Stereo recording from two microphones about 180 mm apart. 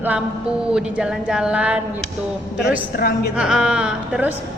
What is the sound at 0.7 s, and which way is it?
A woman's voice, 5° right (ahead or behind).